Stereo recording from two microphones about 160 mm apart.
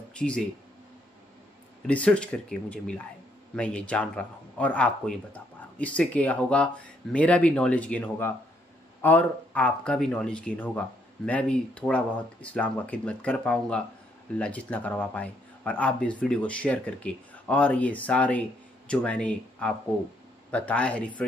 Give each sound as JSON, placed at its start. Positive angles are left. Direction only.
{"t": 0.1, "sound": "speech", "side_deg": 5}
{"t": 1.9, "sound": "speech", "side_deg": 5}